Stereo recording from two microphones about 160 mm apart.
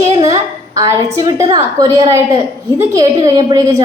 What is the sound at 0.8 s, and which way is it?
A woman's voice, 20° right (ahead or behind).